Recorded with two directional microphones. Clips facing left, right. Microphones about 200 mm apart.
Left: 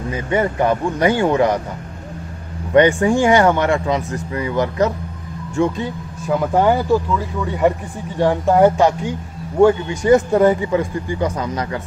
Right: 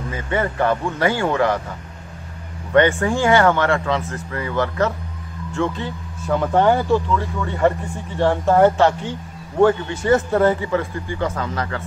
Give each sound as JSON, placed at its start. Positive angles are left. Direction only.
{"t": 0.1, "sound": "speech", "side_deg": 15}
{"t": 2.7, "sound": "speech", "side_deg": 15}